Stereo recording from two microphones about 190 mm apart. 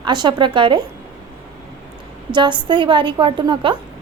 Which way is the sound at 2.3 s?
25° right (ahead or behind).